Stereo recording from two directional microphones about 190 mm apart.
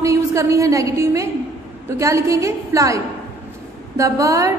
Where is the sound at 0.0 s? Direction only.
15° right (ahead or behind).